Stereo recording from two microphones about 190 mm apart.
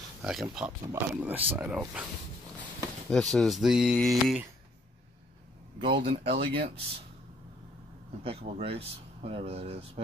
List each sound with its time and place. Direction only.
0.2 s speech: centre (ahead or behind)
3.1 s speech: 5° left (ahead or behind)
6.0 s speech: 30° right (ahead or behind)
8.2 s speech: 30° right (ahead or behind)